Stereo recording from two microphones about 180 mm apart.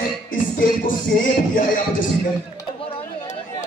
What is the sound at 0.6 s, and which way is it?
Music, 50° left (ahead or behind).